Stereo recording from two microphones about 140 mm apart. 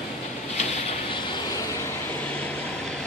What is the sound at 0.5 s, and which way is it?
Vehicle, 40° left (ahead or behind).